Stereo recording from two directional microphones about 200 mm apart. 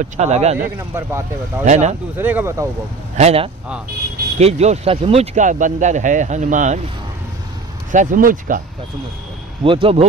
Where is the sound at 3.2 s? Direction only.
30° right (ahead or behind).